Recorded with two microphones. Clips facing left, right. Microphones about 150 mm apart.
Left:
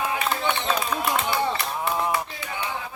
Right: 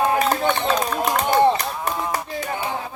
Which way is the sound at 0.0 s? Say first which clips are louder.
Right 7 dB; 45° right (ahead or behind).